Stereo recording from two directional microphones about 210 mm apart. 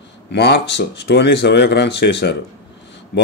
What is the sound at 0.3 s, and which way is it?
Speech, 55° left (ahead or behind).